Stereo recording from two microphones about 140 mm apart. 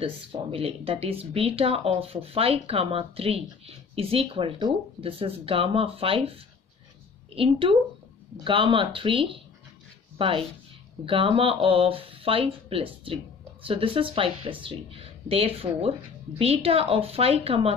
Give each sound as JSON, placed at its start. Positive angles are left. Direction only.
{"t": 0.0, "sound": "speech", "side_deg": -40}